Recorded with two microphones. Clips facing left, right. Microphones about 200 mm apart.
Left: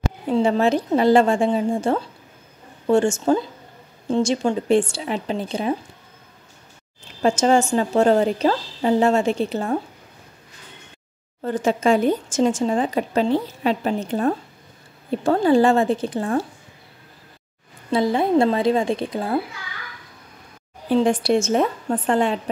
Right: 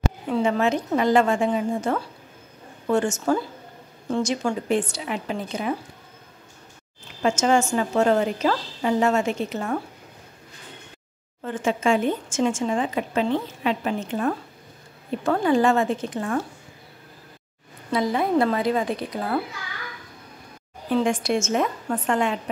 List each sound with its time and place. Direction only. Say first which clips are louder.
0.3 s a woman's voice: left 4 dB; 30° left (ahead or behind)
7.2 s speech: left 3 dB; 35° left (ahead or behind)
11.4 s speech: left 4 dB; 35° left (ahead or behind)
17.9 s a woman's voice: left 3 dB; 25° left (ahead or behind)
20.9 s speech: left 4 dB; 35° left (ahead or behind)